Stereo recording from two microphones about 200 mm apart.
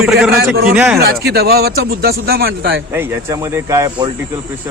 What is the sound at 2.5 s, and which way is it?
Speech, 70° right (ahead or behind).